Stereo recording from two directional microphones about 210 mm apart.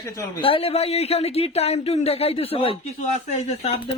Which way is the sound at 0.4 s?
25° left (ahead or behind).